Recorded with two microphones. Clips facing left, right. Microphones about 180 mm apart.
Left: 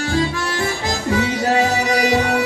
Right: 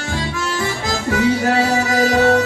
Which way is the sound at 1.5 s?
20° left (ahead or behind).